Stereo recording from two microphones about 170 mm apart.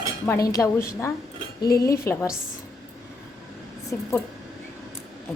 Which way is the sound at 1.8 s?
20° left (ahead or behind).